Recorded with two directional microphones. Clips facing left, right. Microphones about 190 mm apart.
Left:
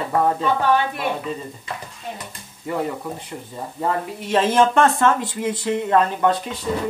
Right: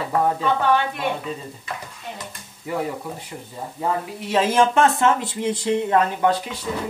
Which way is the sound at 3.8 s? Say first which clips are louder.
Left 1 dB; 10° right (ahead or behind).